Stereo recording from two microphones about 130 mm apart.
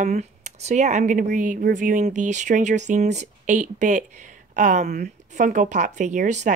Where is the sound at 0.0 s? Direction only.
65° right (ahead or behind).